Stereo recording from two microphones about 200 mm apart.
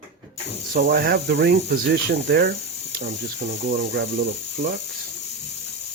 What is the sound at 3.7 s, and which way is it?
Speech, 45° right (ahead or behind).